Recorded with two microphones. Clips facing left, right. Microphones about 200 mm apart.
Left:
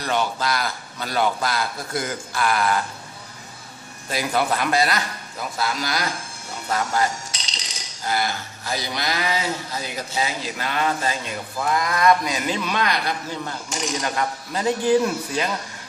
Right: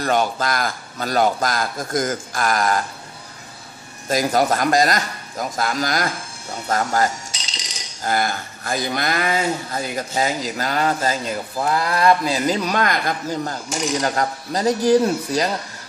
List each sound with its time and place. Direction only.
0.0 s speech: 45° right (ahead or behind)
4.1 s a man's voice: 40° right (ahead or behind)